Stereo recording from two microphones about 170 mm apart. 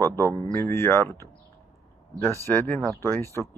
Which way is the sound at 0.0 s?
15° left (ahead or behind).